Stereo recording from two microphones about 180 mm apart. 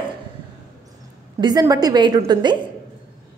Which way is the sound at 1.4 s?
20° right (ahead or behind).